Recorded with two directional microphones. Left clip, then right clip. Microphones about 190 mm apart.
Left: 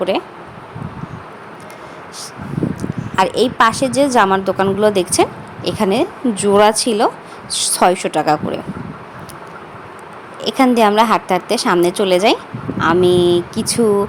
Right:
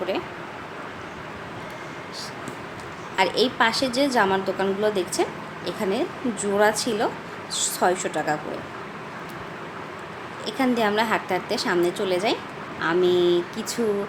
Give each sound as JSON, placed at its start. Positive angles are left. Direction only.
{"t": 3.2, "sound": "a woman's voice", "side_deg": 40}
{"t": 10.4, "sound": "a woman's voice", "side_deg": 45}